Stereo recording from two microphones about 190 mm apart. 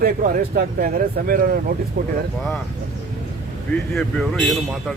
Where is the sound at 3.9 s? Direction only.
Centre (ahead or behind).